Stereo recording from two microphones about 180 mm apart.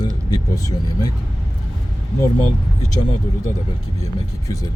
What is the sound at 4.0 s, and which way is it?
Speech, 20° left (ahead or behind).